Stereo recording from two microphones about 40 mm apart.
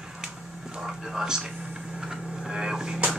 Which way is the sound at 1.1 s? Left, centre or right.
Centre.